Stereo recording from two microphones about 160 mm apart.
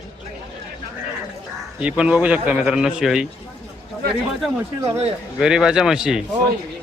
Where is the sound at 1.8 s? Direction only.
5° right (ahead or behind).